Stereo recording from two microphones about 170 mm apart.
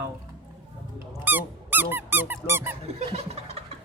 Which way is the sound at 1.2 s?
10° right (ahead or behind).